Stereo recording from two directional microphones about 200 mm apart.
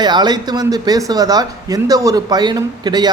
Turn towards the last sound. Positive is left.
turn(degrees=-20)  # may be behind; listen again after turning